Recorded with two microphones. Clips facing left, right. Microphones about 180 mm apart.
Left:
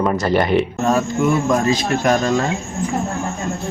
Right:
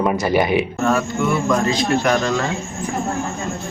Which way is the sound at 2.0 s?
20° left (ahead or behind).